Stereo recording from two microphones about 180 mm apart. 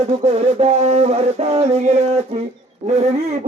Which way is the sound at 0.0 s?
35° right (ahead or behind).